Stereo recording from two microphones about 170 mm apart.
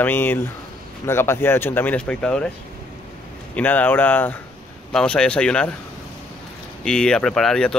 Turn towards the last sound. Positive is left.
turn(degrees=5)  # may be behind; listen again after turning